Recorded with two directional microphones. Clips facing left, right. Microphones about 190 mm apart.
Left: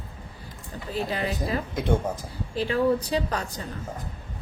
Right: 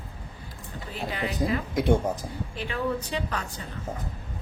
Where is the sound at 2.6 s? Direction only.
35° left (ahead or behind).